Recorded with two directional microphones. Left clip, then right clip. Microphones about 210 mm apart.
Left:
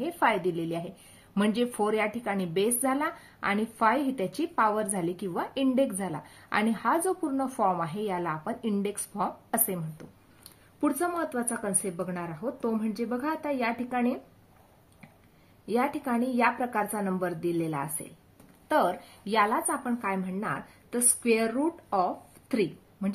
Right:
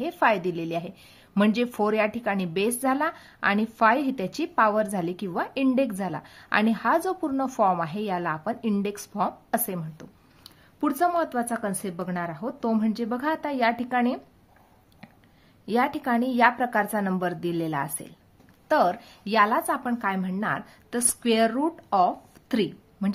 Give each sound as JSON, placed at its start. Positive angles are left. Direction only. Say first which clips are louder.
{"t": 0.0, "sound": "speech", "louder": "right 3 dB", "side_deg": -25}
{"t": 15.6, "sound": "a woman's voice", "louder": "right 4 dB", "side_deg": -35}